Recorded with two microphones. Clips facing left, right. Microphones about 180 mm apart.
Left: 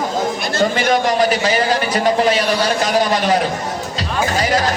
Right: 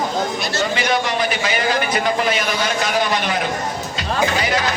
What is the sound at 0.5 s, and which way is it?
A man's voice, 45° left (ahead or behind).